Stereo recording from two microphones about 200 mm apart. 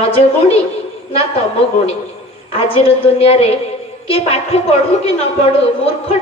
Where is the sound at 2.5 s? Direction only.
30° left (ahead or behind).